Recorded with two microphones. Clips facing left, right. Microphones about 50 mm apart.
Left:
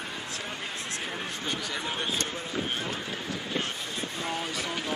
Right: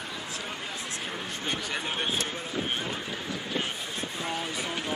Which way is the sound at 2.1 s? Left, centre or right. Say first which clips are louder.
Even; centre.